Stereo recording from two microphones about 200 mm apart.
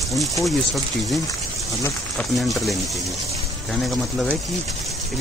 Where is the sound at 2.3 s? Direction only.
Centre (ahead or behind).